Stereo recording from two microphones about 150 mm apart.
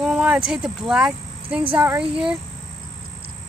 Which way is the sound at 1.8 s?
15° right (ahead or behind).